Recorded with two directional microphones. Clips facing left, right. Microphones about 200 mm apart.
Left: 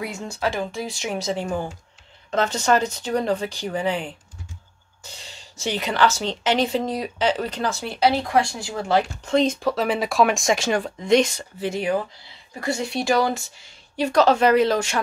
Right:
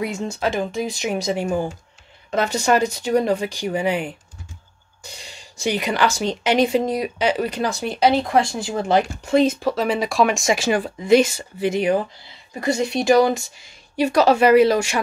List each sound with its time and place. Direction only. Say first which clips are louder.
0.0 s speech: right 3 dB; 20° right (ahead or behind)